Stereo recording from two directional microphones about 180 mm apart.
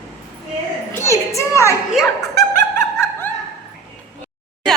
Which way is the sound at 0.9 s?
15° left (ahead or behind).